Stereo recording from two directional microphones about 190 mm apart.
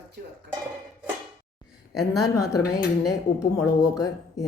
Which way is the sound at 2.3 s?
20° left (ahead or behind).